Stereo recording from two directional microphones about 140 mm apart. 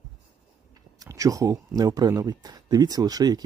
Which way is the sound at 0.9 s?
25° right (ahead or behind).